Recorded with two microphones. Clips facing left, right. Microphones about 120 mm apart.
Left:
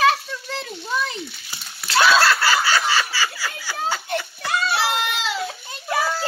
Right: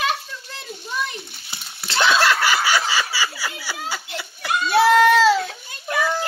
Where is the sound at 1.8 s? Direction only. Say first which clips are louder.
Left 2 dB; 25° right (ahead or behind).